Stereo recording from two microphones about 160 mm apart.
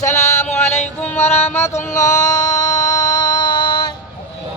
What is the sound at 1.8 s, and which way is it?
Music, 50° left (ahead or behind).